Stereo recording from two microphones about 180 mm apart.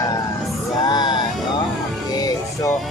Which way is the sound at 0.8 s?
25° left (ahead or behind).